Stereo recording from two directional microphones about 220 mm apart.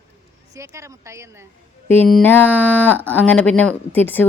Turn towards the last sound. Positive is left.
turn(degrees=10)  # may be behind; listen again after turning